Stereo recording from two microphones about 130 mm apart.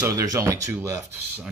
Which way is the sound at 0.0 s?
25° right (ahead or behind).